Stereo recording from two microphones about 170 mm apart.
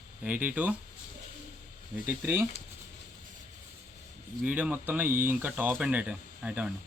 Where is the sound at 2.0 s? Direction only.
15° right (ahead or behind).